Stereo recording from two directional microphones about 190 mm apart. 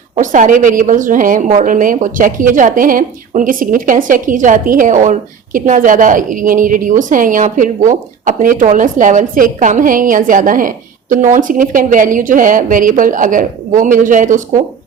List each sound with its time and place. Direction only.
0.2 s a woman's voice: 45° right (ahead or behind)